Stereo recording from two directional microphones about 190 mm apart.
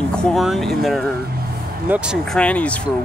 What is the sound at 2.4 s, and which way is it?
Speech, 5° left (ahead or behind).